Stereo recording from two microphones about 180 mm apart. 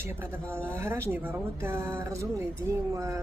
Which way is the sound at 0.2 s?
15° right (ahead or behind).